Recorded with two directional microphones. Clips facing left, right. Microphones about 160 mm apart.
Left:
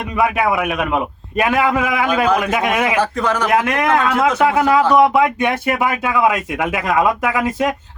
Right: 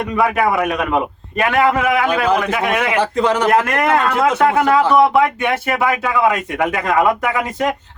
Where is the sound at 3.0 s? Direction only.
20° right (ahead or behind).